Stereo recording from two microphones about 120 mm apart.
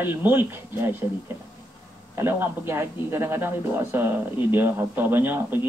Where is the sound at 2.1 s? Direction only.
20° right (ahead or behind).